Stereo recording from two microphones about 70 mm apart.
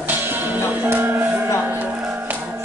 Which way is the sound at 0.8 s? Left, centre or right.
Right.